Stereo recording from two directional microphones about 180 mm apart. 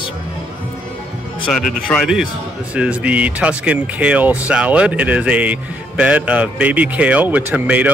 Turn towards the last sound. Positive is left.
turn(degrees=-5)  # may be behind; listen again after turning